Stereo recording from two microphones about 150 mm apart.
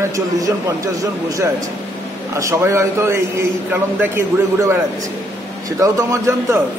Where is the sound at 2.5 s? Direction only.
20° right (ahead or behind).